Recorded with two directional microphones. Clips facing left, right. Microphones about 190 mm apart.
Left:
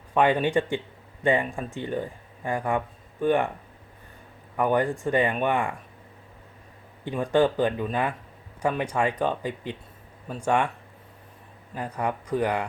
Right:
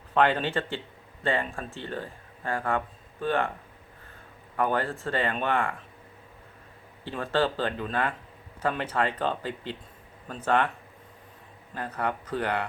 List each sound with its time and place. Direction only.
0.1 s speech: 10° left (ahead or behind)
4.5 s speech: 15° left (ahead or behind)
7.1 s speech: 15° left (ahead or behind)
11.7 s speech: 10° left (ahead or behind)